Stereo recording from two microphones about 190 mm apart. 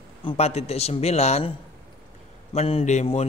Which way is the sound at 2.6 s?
35° left (ahead or behind).